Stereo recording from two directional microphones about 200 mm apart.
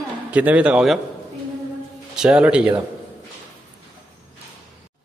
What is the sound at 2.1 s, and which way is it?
Speech, 5° right (ahead or behind).